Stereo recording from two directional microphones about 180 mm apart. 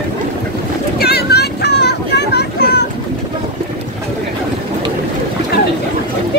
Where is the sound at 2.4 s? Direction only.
70° left (ahead or behind).